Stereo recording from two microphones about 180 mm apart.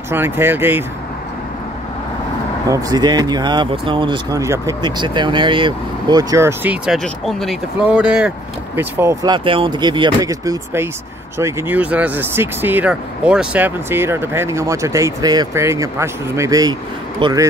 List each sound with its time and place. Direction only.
0.1 s speech: 10° right (ahead or behind)
2.7 s speech: 20° right (ahead or behind)
7.0 s speech: centre (ahead or behind); by 17.5 s 20° right (ahead or behind)